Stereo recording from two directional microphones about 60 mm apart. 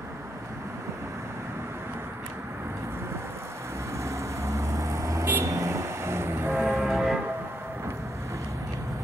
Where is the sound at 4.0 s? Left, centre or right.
Right.